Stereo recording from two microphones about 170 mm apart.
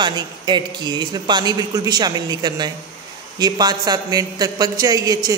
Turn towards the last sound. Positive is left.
turn(degrees=-20)  # may be behind; listen again after turning